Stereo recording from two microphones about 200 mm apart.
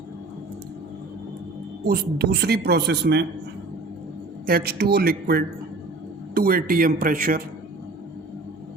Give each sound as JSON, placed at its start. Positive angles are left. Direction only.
{"t": 1.8, "sound": "speech", "side_deg": -50}
{"t": 4.4, "sound": "speech", "side_deg": -50}